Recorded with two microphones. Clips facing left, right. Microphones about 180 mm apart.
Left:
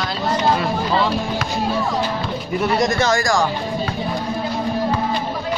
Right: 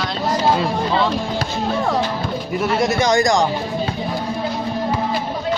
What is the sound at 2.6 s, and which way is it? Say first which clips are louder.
Speech: even; 5° right (ahead or behind).